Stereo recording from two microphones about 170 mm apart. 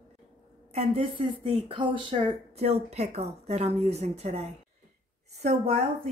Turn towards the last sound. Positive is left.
turn(degrees=-35)  # may be behind; listen again after turning